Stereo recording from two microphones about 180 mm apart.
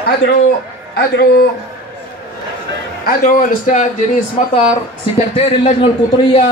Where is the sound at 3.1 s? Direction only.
50° left (ahead or behind); by 6.4 s 35° left (ahead or behind).